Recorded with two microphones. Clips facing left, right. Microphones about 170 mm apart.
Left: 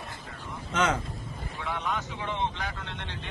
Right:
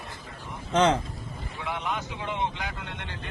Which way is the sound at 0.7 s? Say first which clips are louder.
Right 5 dB; 30° right (ahead or behind).